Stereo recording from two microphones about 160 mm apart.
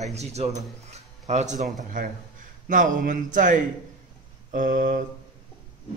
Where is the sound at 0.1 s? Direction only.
45° right (ahead or behind).